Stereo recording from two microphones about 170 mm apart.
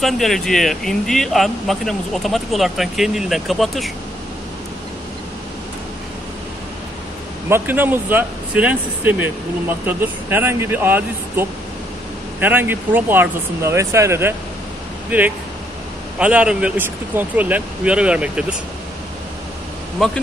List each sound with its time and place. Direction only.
0.0 s speech: centre (ahead or behind)
7.4 s speech: 15° right (ahead or behind)
20.0 s speech: centre (ahead or behind)